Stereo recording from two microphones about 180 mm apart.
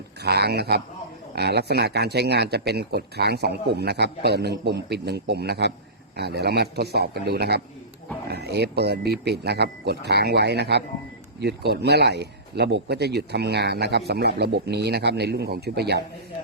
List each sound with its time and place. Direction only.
0.2 s a man's voice: 65° right (ahead or behind)